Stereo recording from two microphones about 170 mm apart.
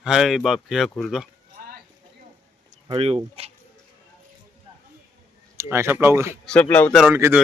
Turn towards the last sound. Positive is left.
turn(degrees=-15)  # may be behind; listen again after turning